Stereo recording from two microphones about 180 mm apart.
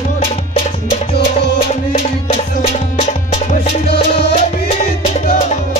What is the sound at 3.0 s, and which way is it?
Music, 40° left (ahead or behind).